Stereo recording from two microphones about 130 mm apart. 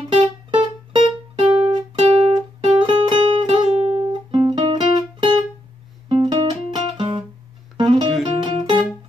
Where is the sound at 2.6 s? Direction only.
40° right (ahead or behind).